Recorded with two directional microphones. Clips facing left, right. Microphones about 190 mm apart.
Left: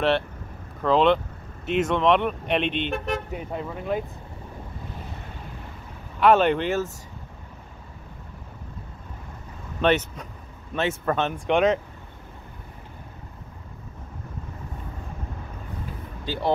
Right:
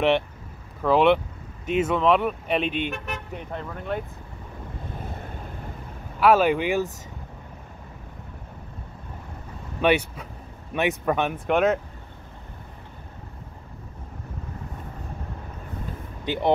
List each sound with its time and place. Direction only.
0.8 s speech: 10° right (ahead or behind)
3.3 s speech: 5° left (ahead or behind)
6.1 s speech: 5° right (ahead or behind)
9.8 s speech: 10° right (ahead or behind)
16.3 s speech: 20° right (ahead or behind)